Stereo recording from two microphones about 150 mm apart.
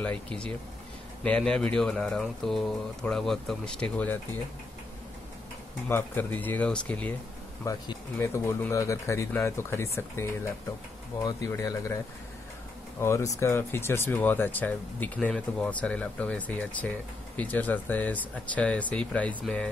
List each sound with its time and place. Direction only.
0.0 s speech: 5° left (ahead or behind)
5.9 s speech: 15° left (ahead or behind)
7.6 s speech: 20° left (ahead or behind)
13.0 s speech: 20° left (ahead or behind)